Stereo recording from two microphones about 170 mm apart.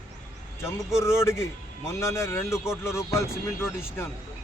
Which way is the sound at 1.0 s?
15° left (ahead or behind).